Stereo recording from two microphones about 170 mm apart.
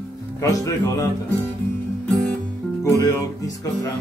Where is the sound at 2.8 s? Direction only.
20° left (ahead or behind).